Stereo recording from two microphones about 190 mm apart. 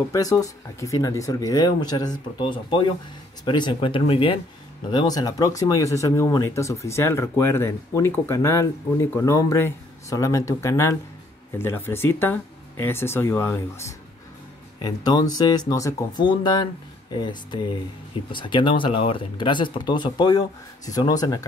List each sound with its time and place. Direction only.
0.1 s speech: 20° left (ahead or behind)